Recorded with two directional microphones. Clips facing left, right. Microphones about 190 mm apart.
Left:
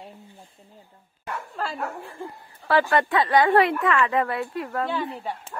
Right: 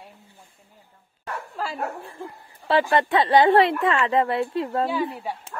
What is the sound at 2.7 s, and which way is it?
A woman's voice, 25° right (ahead or behind).